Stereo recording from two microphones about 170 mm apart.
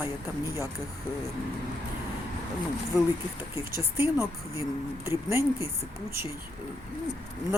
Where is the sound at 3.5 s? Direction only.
15° right (ahead or behind).